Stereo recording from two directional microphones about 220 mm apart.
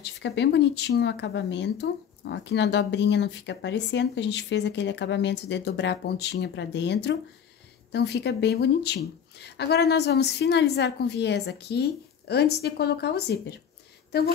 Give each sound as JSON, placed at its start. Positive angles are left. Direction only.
{"t": 0.0, "sound": "speech", "side_deg": 50}